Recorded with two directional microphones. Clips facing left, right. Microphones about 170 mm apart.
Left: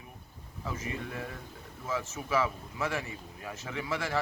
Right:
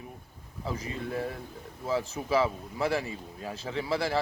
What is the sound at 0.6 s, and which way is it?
A man's voice, 35° right (ahead or behind).